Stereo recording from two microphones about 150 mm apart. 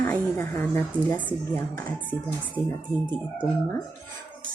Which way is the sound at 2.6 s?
20° left (ahead or behind).